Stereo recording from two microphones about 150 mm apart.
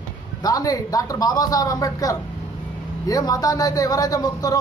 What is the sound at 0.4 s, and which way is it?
Speech, 25° left (ahead or behind).